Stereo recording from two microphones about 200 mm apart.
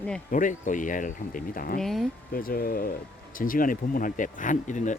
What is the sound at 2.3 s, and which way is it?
Speech, 45° left (ahead or behind).